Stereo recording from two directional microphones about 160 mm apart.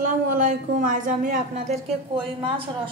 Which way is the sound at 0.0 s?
55° right (ahead or behind).